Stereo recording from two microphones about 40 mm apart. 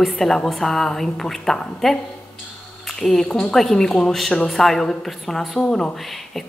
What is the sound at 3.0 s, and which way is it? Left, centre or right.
A woman's voice, centre.